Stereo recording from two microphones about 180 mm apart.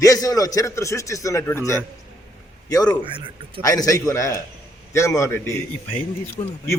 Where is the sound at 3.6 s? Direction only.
20° left (ahead or behind).